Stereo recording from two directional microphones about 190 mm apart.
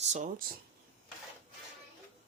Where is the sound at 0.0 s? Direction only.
40° right (ahead or behind).